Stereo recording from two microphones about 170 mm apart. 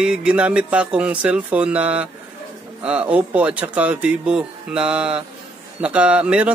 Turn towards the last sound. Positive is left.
turn(degrees=-5)  # may be behind; listen again after turning